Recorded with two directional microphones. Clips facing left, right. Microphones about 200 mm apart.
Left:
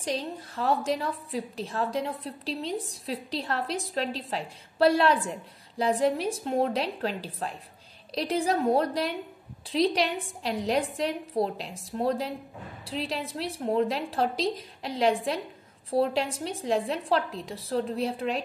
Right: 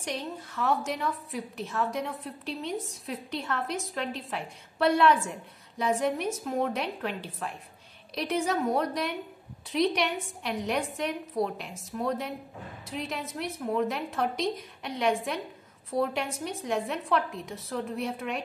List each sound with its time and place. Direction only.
0.0 s a woman's voice: 30° left (ahead or behind)